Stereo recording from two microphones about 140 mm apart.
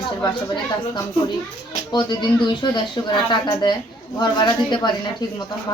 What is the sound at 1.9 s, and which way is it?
Speech, 30° left (ahead or behind).